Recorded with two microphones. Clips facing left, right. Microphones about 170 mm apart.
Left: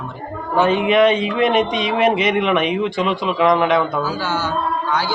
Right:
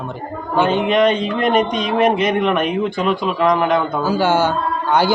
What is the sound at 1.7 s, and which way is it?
Speech, centre (ahead or behind).